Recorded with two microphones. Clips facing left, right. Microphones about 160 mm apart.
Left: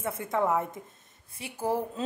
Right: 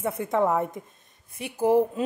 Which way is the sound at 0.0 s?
20° right (ahead or behind).